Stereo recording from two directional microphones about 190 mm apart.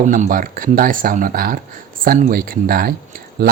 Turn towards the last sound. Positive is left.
turn(degrees=-50)  # may be behind; listen again after turning